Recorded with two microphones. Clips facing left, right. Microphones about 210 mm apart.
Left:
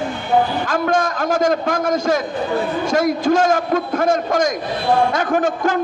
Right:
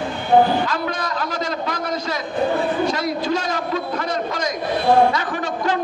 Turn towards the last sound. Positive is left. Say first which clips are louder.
# left 5 dB
turn(degrees=50)  # may be behind; listen again after turning